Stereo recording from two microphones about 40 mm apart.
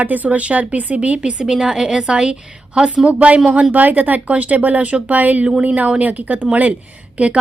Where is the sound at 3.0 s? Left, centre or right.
Right.